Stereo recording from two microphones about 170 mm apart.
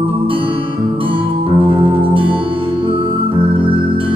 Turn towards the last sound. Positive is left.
turn(degrees=-30)  # may be behind; listen again after turning